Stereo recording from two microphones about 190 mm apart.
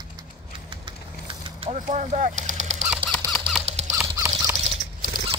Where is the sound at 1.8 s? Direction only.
40° right (ahead or behind).